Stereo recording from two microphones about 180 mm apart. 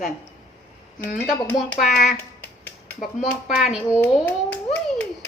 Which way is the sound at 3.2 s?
55° left (ahead or behind).